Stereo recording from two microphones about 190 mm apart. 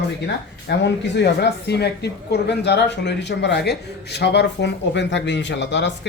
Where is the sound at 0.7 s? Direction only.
65° left (ahead or behind).